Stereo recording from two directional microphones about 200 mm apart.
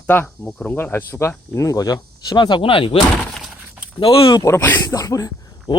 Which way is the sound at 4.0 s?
25° left (ahead or behind).